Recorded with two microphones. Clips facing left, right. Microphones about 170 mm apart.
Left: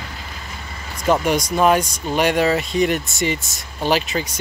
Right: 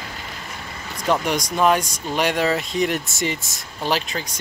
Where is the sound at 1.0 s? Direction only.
5° left (ahead or behind).